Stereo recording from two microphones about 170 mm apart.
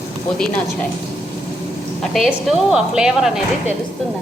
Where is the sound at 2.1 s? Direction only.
Centre (ahead or behind).